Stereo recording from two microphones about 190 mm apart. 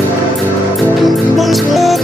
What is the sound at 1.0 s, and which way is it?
Music, centre (ahead or behind).